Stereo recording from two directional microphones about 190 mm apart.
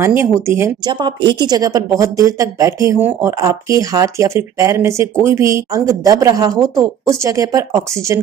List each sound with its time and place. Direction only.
0.0 s a woman's voice: 15° right (ahead or behind)